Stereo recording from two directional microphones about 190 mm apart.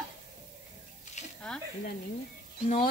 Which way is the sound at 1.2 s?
35° left (ahead or behind).